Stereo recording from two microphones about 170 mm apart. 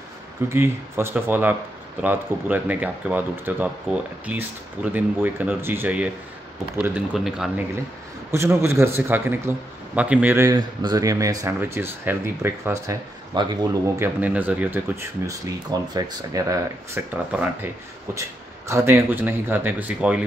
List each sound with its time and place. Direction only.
0.5 s a man's voice: 15° right (ahead or behind)
8.3 s a man's voice: 15° right (ahead or behind)
14.0 s a man's voice: 10° right (ahead or behind)
18.7 s a man's voice: 15° right (ahead or behind)